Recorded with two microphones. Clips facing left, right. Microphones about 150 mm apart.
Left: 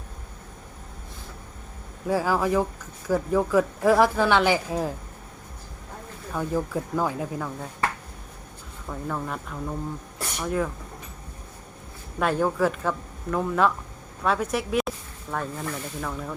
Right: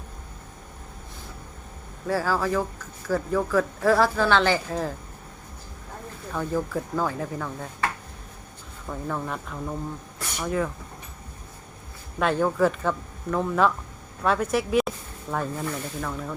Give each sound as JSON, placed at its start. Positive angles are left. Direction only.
{"t": 2.0, "sound": "speech", "side_deg": 15}
{"t": 6.3, "sound": "speech", "side_deg": 10}
{"t": 8.9, "sound": "speech", "side_deg": 0}
{"t": 12.2, "sound": "speech", "side_deg": 5}